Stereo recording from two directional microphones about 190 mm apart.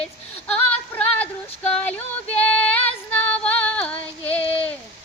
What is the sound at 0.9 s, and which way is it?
Music, 5° left (ahead or behind).